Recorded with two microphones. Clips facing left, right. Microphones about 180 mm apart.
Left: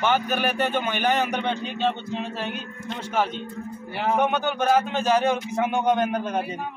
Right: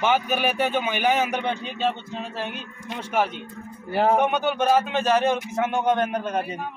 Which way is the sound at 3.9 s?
40° right (ahead or behind).